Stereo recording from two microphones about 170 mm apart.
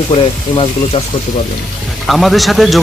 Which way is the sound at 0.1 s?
35° left (ahead or behind).